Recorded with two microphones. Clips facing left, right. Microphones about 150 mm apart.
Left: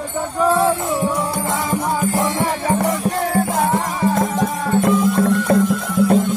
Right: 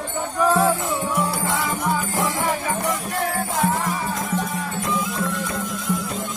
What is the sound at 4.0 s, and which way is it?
Music, 50° left (ahead or behind).